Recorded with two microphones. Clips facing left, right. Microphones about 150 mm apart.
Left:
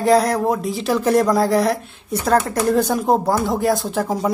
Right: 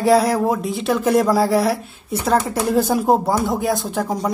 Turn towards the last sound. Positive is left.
turn(degrees=0)  # may be behind; listen again after turning